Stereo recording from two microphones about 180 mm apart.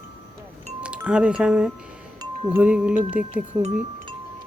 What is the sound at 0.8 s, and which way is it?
Speech, 5° right (ahead or behind).